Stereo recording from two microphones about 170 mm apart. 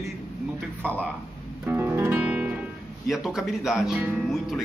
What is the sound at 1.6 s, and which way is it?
Guitar, 10° right (ahead or behind).